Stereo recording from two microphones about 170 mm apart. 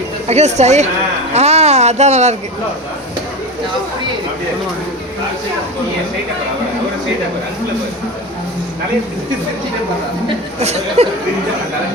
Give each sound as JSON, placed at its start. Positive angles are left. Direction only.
{"t": 0.3, "sound": "speech", "side_deg": -40}
{"t": 10.6, "sound": "speech", "side_deg": -40}